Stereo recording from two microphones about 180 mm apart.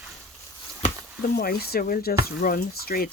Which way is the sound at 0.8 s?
55° left (ahead or behind).